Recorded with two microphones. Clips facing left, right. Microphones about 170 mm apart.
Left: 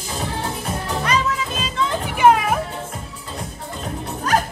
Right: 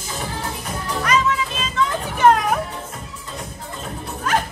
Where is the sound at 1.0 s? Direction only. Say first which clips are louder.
Right 3 dB; 35° left (ahead or behind).